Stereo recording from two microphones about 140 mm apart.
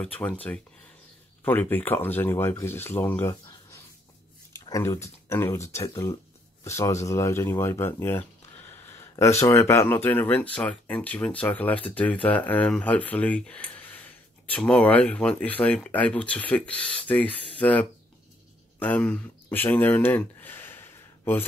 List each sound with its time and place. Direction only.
0.0 s speech: 10° left (ahead or behind)
1.4 s speech: 15° left (ahead or behind)